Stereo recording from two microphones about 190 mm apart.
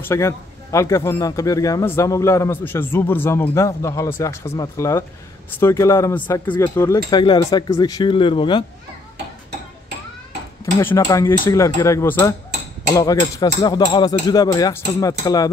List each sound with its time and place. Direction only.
0.0 s speech: 15° left (ahead or behind)
10.6 s speech: 15° left (ahead or behind)